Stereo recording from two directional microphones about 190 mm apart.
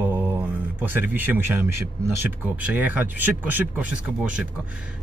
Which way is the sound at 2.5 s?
10° right (ahead or behind).